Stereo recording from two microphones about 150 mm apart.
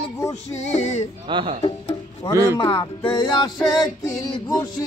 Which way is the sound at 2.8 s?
30° left (ahead or behind).